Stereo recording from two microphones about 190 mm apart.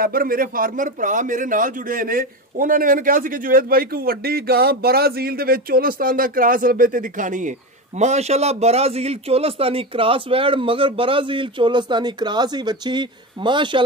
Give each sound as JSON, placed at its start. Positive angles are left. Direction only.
{"t": 0.0, "sound": "a man's voice", "side_deg": -50}